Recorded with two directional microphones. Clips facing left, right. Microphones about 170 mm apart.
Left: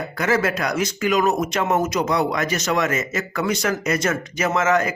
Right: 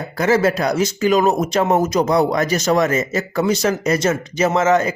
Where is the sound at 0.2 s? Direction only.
30° right (ahead or behind).